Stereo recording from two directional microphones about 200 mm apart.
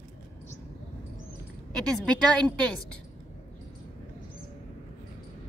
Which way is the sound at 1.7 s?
5° left (ahead or behind).